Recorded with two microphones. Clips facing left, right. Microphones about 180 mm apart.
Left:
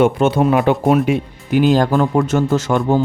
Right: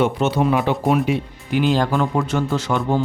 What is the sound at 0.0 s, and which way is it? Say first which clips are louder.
Speech: left 5 dB; 50° left (ahead or behind).